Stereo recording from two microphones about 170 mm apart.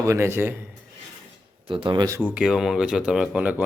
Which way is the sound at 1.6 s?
30° right (ahead or behind).